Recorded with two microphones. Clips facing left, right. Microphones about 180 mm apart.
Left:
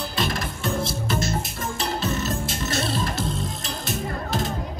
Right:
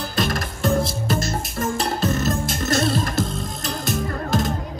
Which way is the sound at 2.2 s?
40° right (ahead or behind).